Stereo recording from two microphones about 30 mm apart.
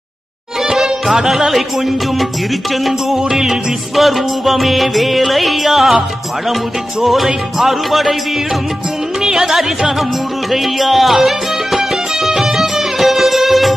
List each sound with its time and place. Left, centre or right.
0.7 s music: centre
3.2 s music: centre
3.9 s music: centre
7.5 s music: centre
9.2 s music: centre